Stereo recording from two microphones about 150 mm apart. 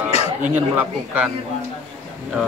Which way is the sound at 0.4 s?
10° right (ahead or behind).